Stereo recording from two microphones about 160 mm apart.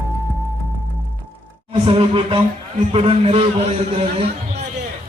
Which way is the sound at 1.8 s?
35° right (ahead or behind).